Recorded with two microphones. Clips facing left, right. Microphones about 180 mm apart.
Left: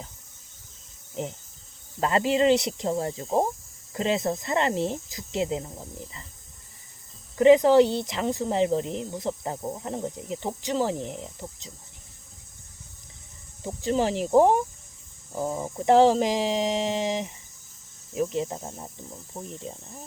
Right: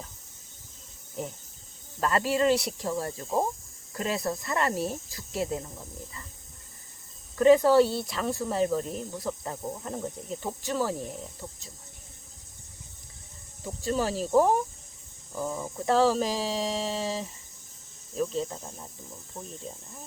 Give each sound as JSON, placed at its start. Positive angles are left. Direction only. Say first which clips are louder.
{"t": 1.2, "sound": "speech", "louder": "left 3 dB", "side_deg": 20}
{"t": 7.3, "sound": "speech", "louder": "left 3 dB", "side_deg": 20}
{"t": 13.7, "sound": "speech", "louder": "left 4 dB", "side_deg": 20}